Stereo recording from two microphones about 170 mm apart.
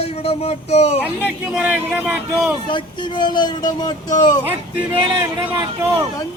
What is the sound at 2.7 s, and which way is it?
Speech, 25° left (ahead or behind).